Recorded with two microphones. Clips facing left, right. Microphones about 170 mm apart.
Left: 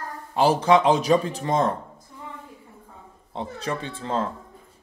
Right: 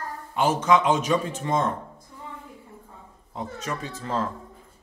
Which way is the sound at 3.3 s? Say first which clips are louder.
Left 3 dB; 30° left (ahead or behind).